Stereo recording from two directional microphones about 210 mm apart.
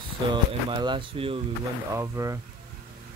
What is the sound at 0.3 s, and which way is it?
Speech, 20° right (ahead or behind).